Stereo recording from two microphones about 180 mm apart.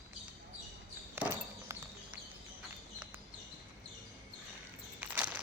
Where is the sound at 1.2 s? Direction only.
10° right (ahead or behind).